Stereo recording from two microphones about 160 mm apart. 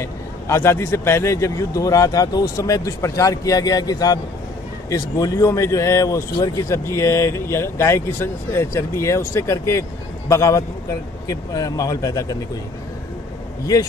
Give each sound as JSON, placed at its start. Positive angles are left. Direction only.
{"t": 0.0, "sound": "a man's voice", "side_deg": 20}